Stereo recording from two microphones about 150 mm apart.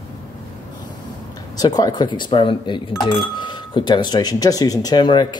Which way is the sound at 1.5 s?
25° left (ahead or behind).